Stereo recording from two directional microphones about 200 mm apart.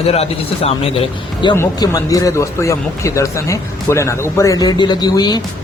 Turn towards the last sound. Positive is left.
turn(degrees=20)  # may be behind; listen again after turning